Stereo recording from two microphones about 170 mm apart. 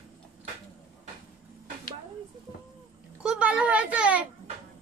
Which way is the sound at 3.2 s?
5° right (ahead or behind).